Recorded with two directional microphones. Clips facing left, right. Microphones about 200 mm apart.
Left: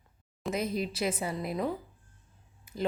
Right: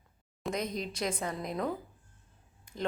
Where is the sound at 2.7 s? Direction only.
5° left (ahead or behind).